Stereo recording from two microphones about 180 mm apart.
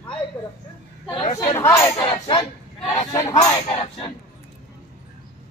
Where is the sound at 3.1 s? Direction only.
20° left (ahead or behind).